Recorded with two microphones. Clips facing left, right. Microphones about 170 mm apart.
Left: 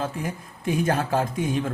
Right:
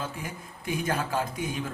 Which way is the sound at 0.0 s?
50° left (ahead or behind).